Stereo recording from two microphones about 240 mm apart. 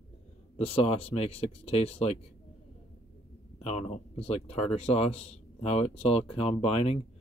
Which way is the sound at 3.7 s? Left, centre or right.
Left.